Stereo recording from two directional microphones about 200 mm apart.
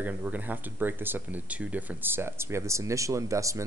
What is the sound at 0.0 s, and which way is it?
Speech, 10° right (ahead or behind).